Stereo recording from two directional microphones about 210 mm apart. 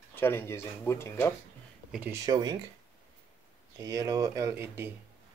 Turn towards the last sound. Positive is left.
turn(degrees=-10)  # may be behind; listen again after turning